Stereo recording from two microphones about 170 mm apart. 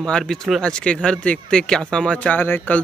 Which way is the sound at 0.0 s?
5° left (ahead or behind).